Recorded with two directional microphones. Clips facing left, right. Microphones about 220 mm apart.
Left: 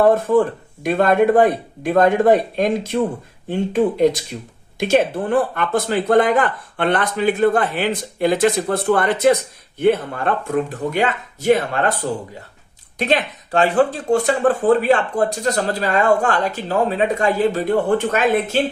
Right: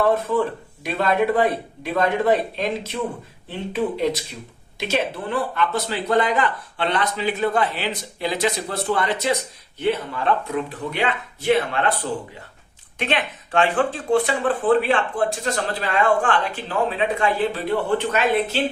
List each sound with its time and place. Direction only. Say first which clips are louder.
0.0 s speech: left 5 dB; 45° left (ahead or behind)
13.0 s speech: left 5 dB; 40° left (ahead or behind)